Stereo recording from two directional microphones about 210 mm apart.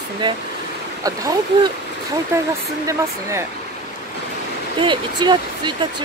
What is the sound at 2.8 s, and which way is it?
Speech, 15° right (ahead or behind).